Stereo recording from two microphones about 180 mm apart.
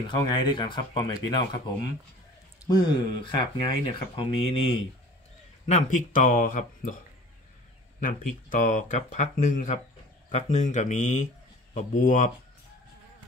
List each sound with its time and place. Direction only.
0.1 s speech: 25° left (ahead or behind)
2.6 s speech: 20° left (ahead or behind)
5.7 s speech: 45° left (ahead or behind)
8.0 s speech: 45° left (ahead or behind)